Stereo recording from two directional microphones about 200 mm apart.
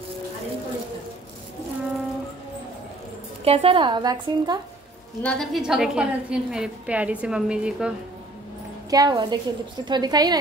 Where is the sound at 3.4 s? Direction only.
25° right (ahead or behind).